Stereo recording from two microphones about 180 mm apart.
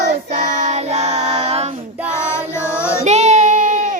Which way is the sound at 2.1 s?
15° left (ahead or behind).